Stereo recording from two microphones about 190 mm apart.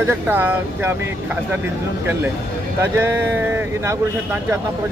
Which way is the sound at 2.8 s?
10° right (ahead or behind).